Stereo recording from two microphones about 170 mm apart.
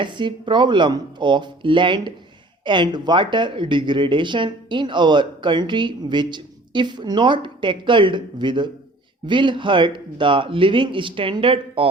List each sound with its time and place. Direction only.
0.0 s speech: 30° right (ahead or behind)